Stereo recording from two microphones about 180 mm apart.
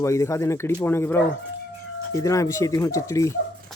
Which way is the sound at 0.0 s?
15° left (ahead or behind).